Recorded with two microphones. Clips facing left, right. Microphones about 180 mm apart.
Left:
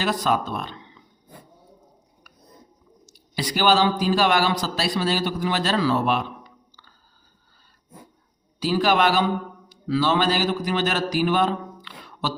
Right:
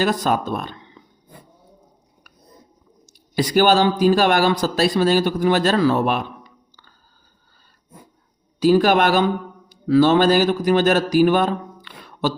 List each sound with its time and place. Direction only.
0.0 s speech: 45° right (ahead or behind)
3.1 s speech: 50° right (ahead or behind)
8.5 s a man's voice: 50° right (ahead or behind)